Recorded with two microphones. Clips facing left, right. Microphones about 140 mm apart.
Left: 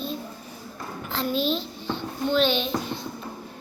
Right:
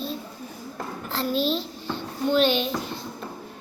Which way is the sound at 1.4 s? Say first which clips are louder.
Right 1 dB; 40° right (ahead or behind).